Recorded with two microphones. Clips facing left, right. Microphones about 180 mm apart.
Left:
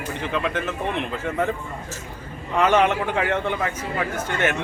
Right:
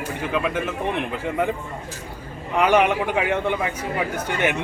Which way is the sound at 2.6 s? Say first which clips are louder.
Right 1 dB; 10° right (ahead or behind).